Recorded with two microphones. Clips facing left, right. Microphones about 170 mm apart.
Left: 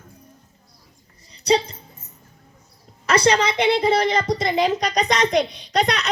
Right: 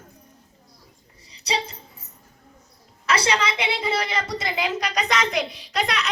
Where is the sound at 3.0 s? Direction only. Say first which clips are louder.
Left 5 dB; 40° left (ahead or behind).